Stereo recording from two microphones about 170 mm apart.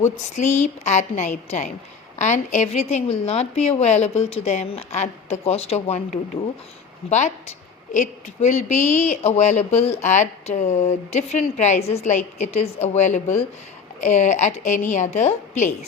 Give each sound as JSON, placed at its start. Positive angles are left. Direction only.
{"t": 0.0, "sound": "a woman's voice", "side_deg": 45}
{"t": 7.9, "sound": "a woman's voice", "side_deg": 45}